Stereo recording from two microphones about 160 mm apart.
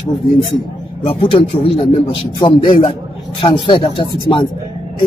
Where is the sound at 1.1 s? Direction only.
35° left (ahead or behind).